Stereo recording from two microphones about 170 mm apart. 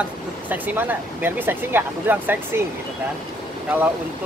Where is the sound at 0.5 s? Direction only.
10° right (ahead or behind).